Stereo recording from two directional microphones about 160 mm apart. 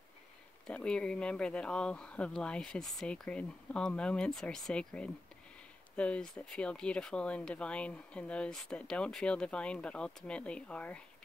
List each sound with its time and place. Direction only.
0.7 s speech: 5° left (ahead or behind)